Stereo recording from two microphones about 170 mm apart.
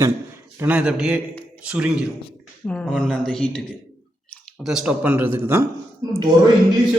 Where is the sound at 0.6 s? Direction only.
5° right (ahead or behind).